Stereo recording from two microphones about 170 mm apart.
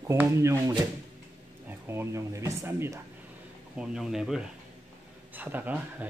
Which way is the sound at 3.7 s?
5° right (ahead or behind).